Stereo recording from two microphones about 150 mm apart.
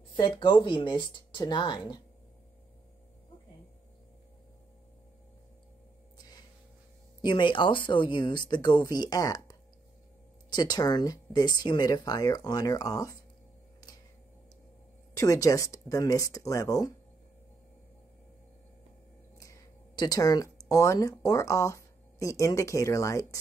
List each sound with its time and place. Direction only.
0.4 s speech: 30° left (ahead or behind)
7.2 s speech: 30° left (ahead or behind)
15.1 s speech: 20° left (ahead or behind)
20.0 s speech: 25° left (ahead or behind)